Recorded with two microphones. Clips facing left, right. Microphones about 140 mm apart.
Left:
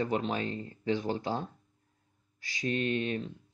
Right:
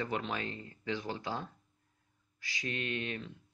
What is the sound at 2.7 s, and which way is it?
Speech, 35° left (ahead or behind).